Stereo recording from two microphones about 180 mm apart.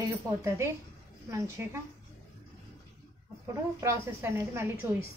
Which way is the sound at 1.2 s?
15° right (ahead or behind).